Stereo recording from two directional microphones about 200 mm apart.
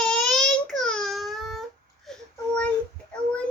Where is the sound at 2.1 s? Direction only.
5° left (ahead or behind).